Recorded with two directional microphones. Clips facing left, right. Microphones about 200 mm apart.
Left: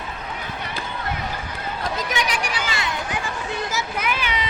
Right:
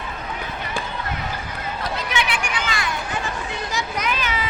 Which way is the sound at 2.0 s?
40° left (ahead or behind).